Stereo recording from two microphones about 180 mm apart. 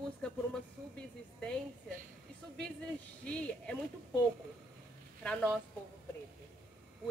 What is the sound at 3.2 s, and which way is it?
Speech, 5° left (ahead or behind).